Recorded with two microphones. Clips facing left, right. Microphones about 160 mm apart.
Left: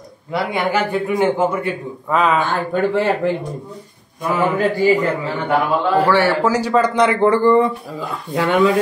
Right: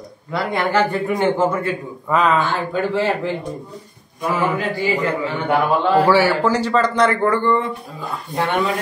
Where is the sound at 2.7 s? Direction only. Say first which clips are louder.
Left 3 dB; 55° left (ahead or behind).